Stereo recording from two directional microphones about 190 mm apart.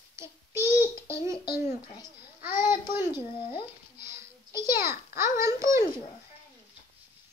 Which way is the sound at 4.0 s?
15° right (ahead or behind).